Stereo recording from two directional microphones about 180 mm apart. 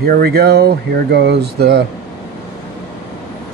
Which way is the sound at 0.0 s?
55° right (ahead or behind).